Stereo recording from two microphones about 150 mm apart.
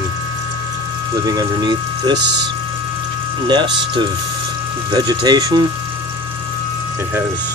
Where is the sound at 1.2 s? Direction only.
25° right (ahead or behind).